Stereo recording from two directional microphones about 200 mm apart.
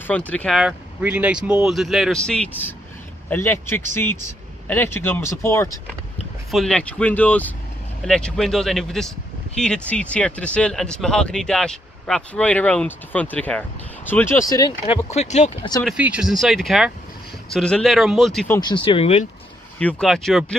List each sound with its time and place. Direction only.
0.3 s speech: 5° left (ahead or behind)
14.5 s speech: 20° left (ahead or behind)
15.1 s speech: 35° left (ahead or behind)
15.8 s speech: 5° right (ahead or behind)
18.6 s speech: 25° left (ahead or behind)
19.8 s speech: 5° left (ahead or behind)